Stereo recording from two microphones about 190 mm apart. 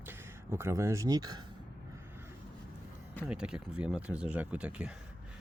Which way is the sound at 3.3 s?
5° right (ahead or behind).